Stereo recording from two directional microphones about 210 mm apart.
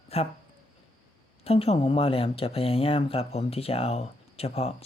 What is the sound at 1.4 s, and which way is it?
Speech, 30° left (ahead or behind).